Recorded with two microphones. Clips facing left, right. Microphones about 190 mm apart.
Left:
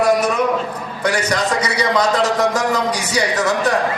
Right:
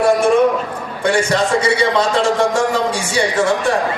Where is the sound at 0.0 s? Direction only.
25° right (ahead or behind).